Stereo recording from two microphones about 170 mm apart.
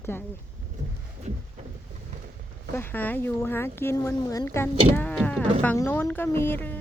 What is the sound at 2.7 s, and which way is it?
Speech, 15° left (ahead or behind).